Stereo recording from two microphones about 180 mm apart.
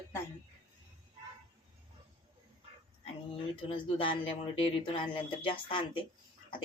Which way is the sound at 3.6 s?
30° left (ahead or behind).